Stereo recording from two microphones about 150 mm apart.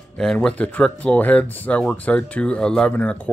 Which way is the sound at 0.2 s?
5° left (ahead or behind).